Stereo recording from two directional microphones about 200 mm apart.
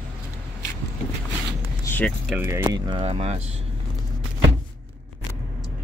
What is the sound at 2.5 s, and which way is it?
Speech, 15° right (ahead or behind).